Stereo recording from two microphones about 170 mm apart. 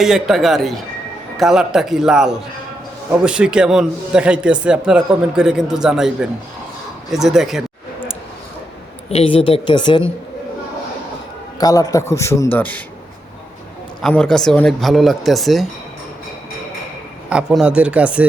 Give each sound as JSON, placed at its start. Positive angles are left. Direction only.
{"t": 0.0, "sound": "speech", "side_deg": 0}
{"t": 9.0, "sound": "a woman's voice", "side_deg": 35}
{"t": 11.6, "sound": "a man's voice", "side_deg": 20}
{"t": 14.0, "sound": "speech", "side_deg": 5}
{"t": 17.2, "sound": "speech", "side_deg": -5}